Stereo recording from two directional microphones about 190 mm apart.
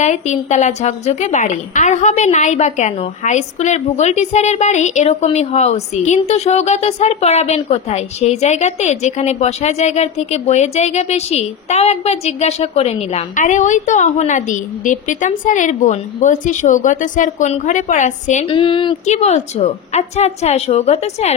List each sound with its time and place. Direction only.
0.0 s a woman's voice: 40° left (ahead or behind)
18.5 s a woman's voice: 25° left (ahead or behind)